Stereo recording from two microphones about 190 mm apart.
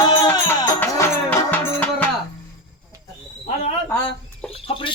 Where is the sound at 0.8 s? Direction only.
10° left (ahead or behind).